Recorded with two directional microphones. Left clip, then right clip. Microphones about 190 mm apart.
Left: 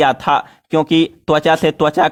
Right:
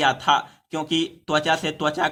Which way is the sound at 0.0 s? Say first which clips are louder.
Left 6 dB; 50° left (ahead or behind).